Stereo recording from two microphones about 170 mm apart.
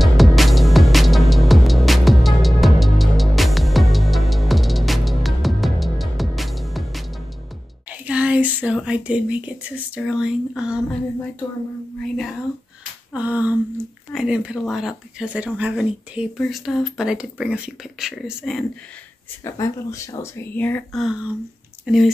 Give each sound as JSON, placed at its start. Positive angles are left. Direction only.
{"t": 0.0, "sound": "music", "side_deg": 0}
{"t": 7.9, "sound": "speech", "side_deg": -5}
{"t": 12.0, "sound": "speech", "side_deg": 0}
{"t": 13.1, "sound": "speech", "side_deg": -10}
{"t": 19.4, "sound": "speech", "side_deg": 20}
{"t": 21.0, "sound": "speech", "side_deg": -5}